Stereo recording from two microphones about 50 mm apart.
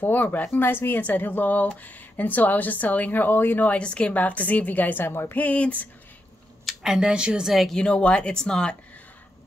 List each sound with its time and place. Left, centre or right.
0.0 s speech: left
3.7 s speech: left
5.3 s speech: left
6.7 s speech: centre
7.4 s speech: centre
7.7 s speech: left